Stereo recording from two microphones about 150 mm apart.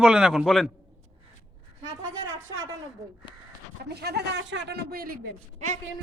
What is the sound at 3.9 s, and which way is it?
A man's voice, 90° right.